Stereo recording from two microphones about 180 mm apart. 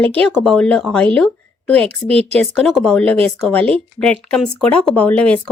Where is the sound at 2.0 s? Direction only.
35° right (ahead or behind).